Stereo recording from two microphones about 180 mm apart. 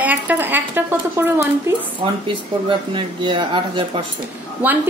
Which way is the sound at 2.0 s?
30° right (ahead or behind).